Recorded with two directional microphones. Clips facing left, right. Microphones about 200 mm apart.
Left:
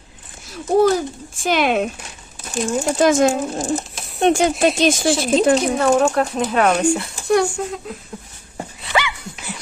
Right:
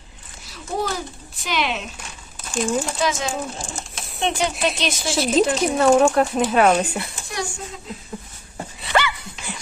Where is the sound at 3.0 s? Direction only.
50° left (ahead or behind).